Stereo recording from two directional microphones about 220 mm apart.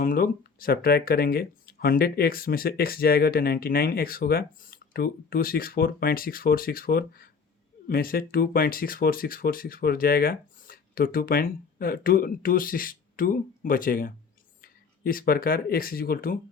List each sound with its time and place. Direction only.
0.0 s speech: 40° left (ahead or behind)